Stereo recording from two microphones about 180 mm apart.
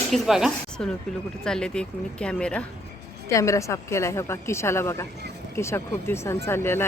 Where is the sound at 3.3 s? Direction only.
15° left (ahead or behind).